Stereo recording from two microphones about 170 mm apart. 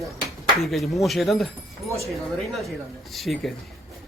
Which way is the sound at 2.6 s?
Centre (ahead or behind).